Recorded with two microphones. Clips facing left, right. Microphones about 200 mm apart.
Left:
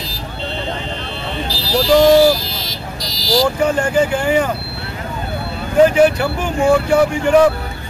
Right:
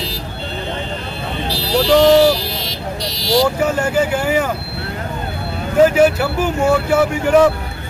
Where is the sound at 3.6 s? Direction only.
5° right (ahead or behind).